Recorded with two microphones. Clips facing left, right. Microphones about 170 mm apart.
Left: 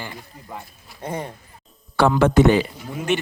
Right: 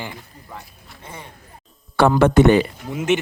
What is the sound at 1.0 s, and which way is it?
Speech, 45° left (ahead or behind).